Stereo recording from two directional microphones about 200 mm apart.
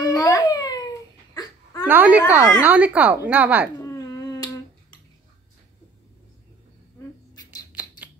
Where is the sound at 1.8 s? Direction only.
10° right (ahead or behind).